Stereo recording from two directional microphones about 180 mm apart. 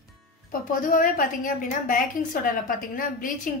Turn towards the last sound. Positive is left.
turn(degrees=50)  # may be behind; listen again after turning